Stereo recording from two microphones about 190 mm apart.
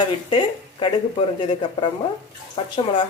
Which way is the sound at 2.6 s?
30° left (ahead or behind).